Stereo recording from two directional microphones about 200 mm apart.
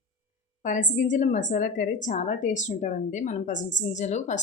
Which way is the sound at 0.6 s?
40° left (ahead or behind).